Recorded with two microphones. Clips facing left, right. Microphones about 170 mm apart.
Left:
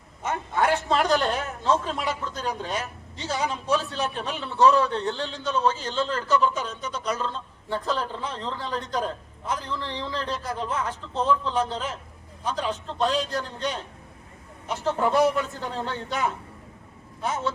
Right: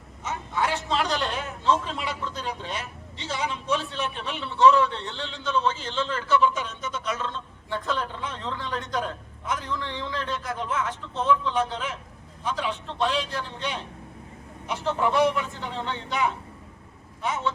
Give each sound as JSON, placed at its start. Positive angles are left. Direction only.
{"t": 0.2, "sound": "a man's voice", "side_deg": 55}